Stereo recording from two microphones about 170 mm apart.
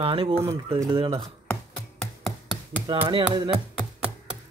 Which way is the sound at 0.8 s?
25° right (ahead or behind).